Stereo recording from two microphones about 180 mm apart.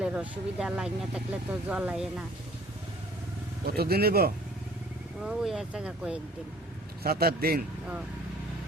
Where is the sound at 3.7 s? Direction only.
60° right (ahead or behind).